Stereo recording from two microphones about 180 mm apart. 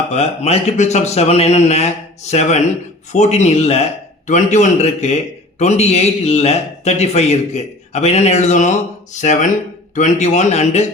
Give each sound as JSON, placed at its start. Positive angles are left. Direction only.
{"t": 0.1, "sound": "a man's voice", "side_deg": 35}